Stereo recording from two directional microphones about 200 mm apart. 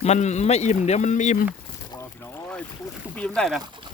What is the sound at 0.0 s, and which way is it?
Speech, 35° left (ahead or behind).